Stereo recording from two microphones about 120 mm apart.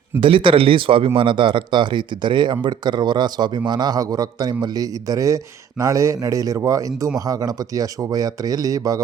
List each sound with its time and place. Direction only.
0.2 s speech: 45° right (ahead or behind); by 9.0 s 30° right (ahead or behind)